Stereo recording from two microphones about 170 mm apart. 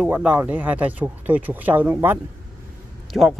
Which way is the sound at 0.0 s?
5° right (ahead or behind).